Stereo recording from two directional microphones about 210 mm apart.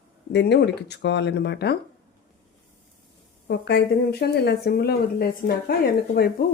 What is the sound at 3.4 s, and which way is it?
Speech, 55° left (ahead or behind).